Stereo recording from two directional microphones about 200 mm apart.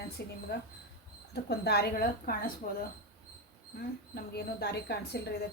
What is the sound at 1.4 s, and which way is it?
Speech, 55° left (ahead or behind).